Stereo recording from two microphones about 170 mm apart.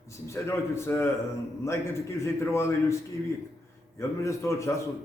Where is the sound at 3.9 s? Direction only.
15° left (ahead or behind).